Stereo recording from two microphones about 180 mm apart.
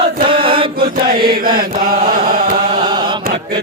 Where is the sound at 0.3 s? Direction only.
30° right (ahead or behind).